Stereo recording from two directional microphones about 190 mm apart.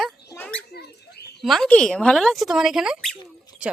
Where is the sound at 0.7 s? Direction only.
60° left (ahead or behind).